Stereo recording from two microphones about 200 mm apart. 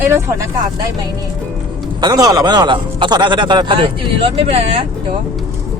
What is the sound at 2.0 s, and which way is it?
A man's voice, 20° right (ahead or behind).